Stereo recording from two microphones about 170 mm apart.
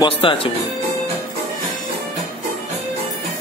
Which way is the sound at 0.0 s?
30° left (ahead or behind).